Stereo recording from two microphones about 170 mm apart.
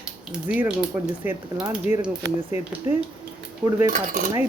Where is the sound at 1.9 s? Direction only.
40° left (ahead or behind).